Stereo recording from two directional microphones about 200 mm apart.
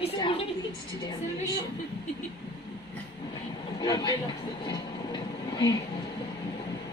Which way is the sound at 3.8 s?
20° left (ahead or behind).